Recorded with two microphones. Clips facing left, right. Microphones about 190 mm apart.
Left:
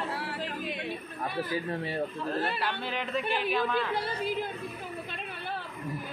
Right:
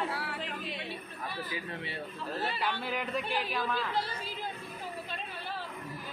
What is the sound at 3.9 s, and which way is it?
Speech, 60° left (ahead or behind).